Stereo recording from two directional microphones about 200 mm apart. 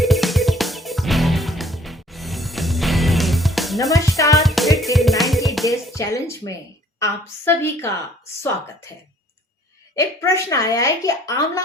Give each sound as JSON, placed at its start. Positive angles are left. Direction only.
{"t": 0.0, "sound": "music", "side_deg": 0}
{"t": 4.2, "sound": "music", "side_deg": 15}
{"t": 4.4, "sound": "music", "side_deg": 0}
{"t": 5.6, "sound": "a woman's voice", "side_deg": 15}
{"t": 9.9, "sound": "a woman's voice", "side_deg": 15}